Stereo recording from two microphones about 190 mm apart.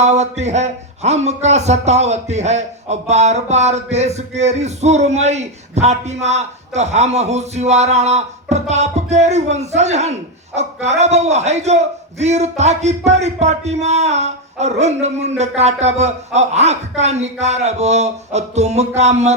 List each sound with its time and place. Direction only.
0.0 s speech: 35° right (ahead or behind)